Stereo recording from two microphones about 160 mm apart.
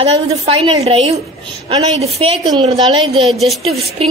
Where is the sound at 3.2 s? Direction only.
Centre (ahead or behind).